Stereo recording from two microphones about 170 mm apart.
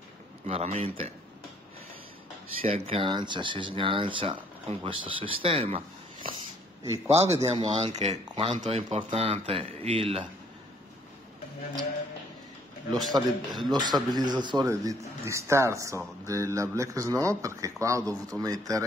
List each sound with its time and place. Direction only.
0.5 s speech: 40° right (ahead or behind)
2.6 s speech: 35° right (ahead or behind)
7.2 s speech: 20° right (ahead or behind)
7.7 s speech: 40° right (ahead or behind)
12.9 s speech: centre (ahead or behind)
13.7 s speech: 25° right (ahead or behind)